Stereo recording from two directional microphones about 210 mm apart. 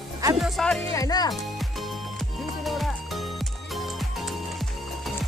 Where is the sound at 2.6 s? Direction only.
Centre (ahead or behind).